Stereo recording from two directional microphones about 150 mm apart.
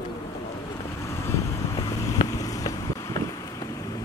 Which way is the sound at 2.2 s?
25° left (ahead or behind).